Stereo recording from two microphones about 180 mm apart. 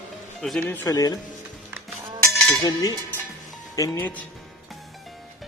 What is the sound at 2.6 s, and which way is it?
Music, 20° left (ahead or behind).